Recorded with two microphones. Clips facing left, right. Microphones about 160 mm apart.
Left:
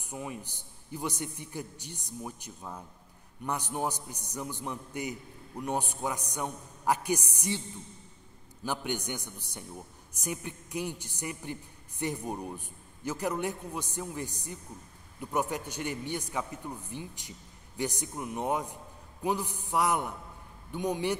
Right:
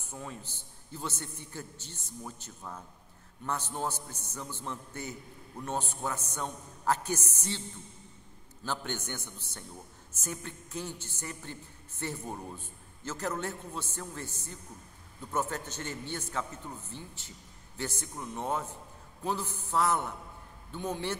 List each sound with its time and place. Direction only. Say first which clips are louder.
0.0 s a woman's voice: left 4 dB; 15° left (ahead or behind)
8.6 s a woman's voice: left 3 dB; 15° left (ahead or behind)